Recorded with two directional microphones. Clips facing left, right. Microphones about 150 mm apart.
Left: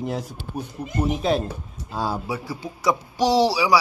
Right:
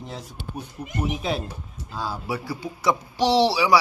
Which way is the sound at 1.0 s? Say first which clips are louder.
Left 6 dB; 40° left (ahead or behind).